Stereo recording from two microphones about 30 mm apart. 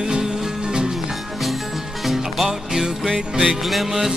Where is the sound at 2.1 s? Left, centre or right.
Centre.